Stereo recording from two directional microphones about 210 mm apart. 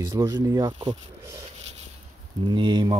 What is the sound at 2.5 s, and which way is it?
Speech, 20° right (ahead or behind).